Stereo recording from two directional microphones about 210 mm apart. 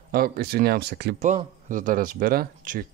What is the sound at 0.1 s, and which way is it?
Speech, 45° right (ahead or behind).